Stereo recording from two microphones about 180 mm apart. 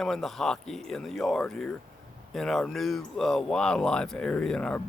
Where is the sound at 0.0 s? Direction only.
Centre (ahead or behind).